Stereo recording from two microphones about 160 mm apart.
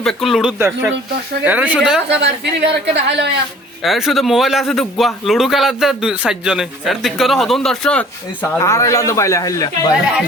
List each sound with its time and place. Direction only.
0.0 s a man's voice: centre (ahead or behind)
0.6 s speech: 10° right (ahead or behind)
2.0 s a woman's voice: 90° right
3.8 s a man's voice: centre (ahead or behind); by 9.6 s 20° left (ahead or behind)